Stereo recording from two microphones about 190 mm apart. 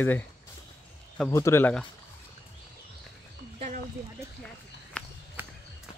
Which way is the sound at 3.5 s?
40° right (ahead or behind).